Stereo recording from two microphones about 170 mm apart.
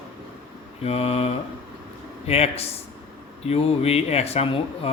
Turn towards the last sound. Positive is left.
turn(degrees=35)  # may be behind; listen again after turning